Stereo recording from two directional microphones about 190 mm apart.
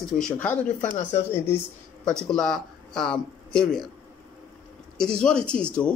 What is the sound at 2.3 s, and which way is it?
Speech, 5° left (ahead or behind).